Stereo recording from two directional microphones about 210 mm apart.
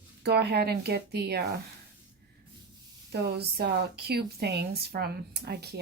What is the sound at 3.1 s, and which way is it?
Speech, 50° right (ahead or behind).